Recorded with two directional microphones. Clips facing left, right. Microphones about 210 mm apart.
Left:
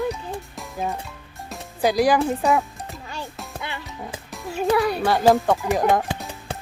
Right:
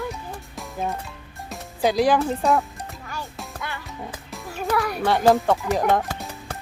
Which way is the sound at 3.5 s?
20° left (ahead or behind).